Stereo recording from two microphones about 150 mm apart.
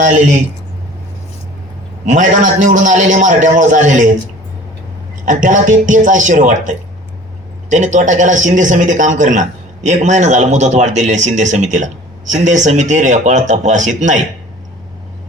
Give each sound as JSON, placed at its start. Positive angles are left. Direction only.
{"t": 0.0, "sound": "a man's voice", "side_deg": -55}
{"t": 2.0, "sound": "a man's voice", "side_deg": -55}
{"t": 5.2, "sound": "a man's voice", "side_deg": -60}